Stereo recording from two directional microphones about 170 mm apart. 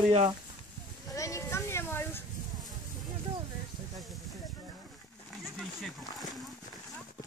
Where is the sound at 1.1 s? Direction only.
20° left (ahead or behind).